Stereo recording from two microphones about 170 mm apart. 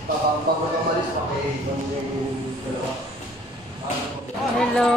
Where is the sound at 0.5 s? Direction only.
60° right (ahead or behind).